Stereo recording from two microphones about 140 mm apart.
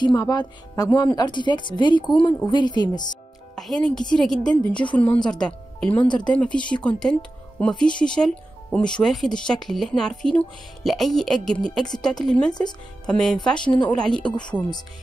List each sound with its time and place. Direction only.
0.0 s speech: 30° left (ahead or behind)
3.5 s speech: 5° left (ahead or behind)